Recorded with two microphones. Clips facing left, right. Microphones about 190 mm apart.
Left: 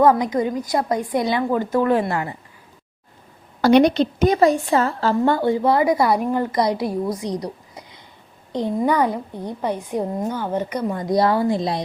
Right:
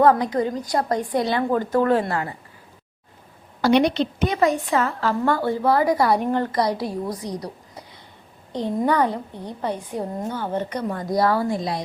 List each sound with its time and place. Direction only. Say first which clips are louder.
0.0 s a woman's voice: left 1 dB; 15° left (ahead or behind)
2.0 s speech: left 2 dB; 20° left (ahead or behind)
3.6 s a woman's voice: left 4 dB; 45° left (ahead or behind); by 11.8 s 25° left (ahead or behind)